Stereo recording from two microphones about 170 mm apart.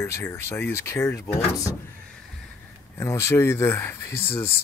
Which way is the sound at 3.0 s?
15° left (ahead or behind).